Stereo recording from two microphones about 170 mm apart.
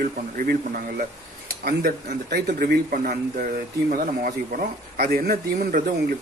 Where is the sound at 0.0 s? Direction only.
55° right (ahead or behind).